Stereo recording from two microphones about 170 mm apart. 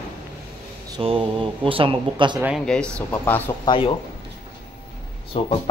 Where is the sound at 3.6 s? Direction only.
30° left (ahead or behind).